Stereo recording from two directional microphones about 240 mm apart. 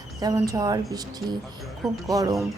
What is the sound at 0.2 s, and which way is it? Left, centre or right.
Speech, centre.